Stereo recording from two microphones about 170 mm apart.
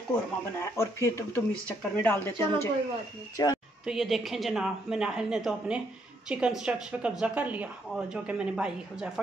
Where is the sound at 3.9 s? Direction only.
Centre (ahead or behind).